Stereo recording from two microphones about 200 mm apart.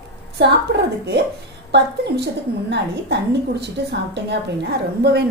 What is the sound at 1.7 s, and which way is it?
A woman's voice, 60° right (ahead or behind).